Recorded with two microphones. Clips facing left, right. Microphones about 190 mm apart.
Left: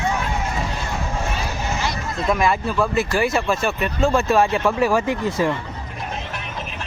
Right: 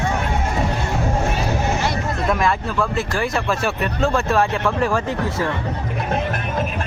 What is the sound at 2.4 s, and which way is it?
Speech, 5° left (ahead or behind).